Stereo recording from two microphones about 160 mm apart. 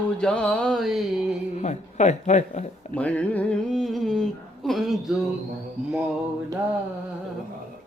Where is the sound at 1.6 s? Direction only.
45° left (ahead or behind).